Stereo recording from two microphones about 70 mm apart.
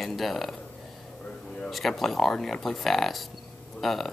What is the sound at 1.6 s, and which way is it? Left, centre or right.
Speech, centre.